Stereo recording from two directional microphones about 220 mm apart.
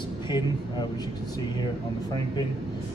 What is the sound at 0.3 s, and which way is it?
Speech, 20° left (ahead or behind).